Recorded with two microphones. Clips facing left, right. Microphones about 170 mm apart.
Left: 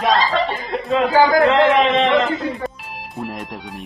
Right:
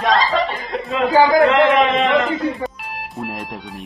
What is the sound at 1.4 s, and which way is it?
Speech, 25° left (ahead or behind).